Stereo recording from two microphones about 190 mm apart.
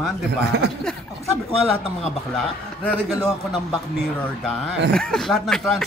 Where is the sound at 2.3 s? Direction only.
5° left (ahead or behind).